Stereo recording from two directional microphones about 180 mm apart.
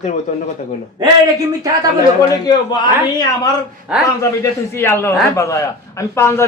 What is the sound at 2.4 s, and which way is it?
Speech, 25° left (ahead or behind).